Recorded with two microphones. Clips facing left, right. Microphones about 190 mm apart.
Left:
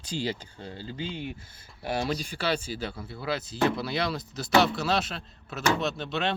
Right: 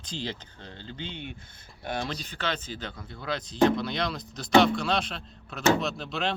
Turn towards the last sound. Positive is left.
turn(degrees=0)  # may be behind; listen again after turning